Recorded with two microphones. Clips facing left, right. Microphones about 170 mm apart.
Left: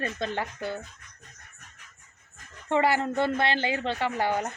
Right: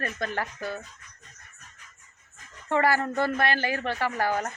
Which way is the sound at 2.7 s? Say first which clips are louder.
Even; 20° left (ahead or behind).